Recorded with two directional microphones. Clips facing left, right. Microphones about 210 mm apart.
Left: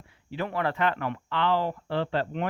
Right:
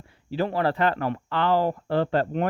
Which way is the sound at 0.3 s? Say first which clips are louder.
Right 5 dB; 35° right (ahead or behind).